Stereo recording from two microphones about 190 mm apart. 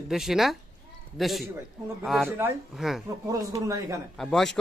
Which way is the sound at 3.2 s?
20° right (ahead or behind).